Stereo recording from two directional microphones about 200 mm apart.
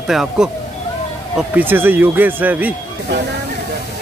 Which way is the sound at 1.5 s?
10° right (ahead or behind).